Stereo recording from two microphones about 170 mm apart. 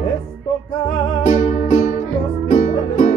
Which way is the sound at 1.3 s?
45° left (ahead or behind).